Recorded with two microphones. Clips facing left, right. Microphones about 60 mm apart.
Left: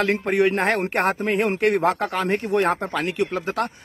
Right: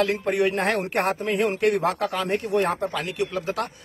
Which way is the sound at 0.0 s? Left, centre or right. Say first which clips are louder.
Left 2 dB; left.